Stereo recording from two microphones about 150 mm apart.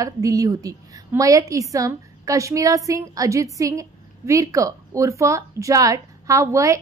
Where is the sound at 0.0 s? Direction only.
25° right (ahead or behind).